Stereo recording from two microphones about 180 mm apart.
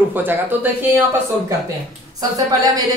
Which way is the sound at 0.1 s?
10° right (ahead or behind).